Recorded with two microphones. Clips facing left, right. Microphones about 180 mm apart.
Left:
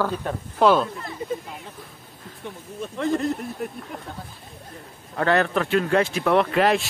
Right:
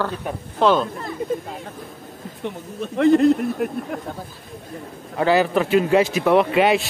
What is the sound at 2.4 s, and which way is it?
Speech, 70° right (ahead or behind).